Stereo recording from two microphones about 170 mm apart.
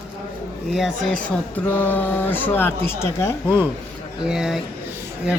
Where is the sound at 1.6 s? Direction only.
10° left (ahead or behind).